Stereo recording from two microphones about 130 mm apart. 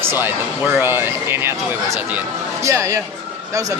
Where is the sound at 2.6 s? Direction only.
25° right (ahead or behind).